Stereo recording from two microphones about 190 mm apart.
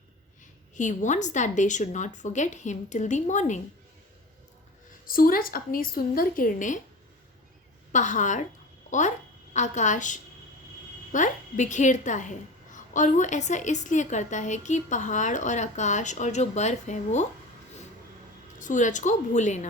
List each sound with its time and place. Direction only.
0.8 s a woman's voice: 40° left (ahead or behind)
5.0 s a woman's voice: 50° left (ahead or behind)
7.9 s a woman's voice: 40° left (ahead or behind)
18.6 s a woman's voice: 40° left (ahead or behind)